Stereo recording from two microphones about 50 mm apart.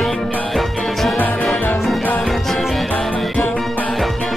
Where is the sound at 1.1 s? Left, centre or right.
Left.